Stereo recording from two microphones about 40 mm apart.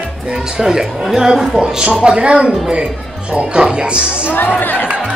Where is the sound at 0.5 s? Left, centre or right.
Centre.